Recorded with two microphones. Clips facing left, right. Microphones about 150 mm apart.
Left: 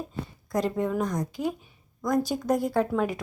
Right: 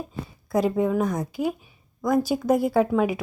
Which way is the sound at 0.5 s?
5° right (ahead or behind).